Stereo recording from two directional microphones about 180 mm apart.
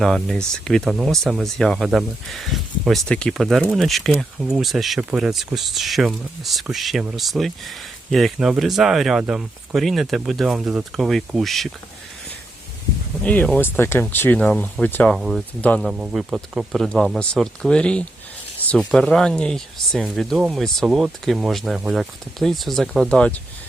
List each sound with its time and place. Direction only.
0.0 s speech: centre (ahead or behind)
13.2 s speech: 10° left (ahead or behind)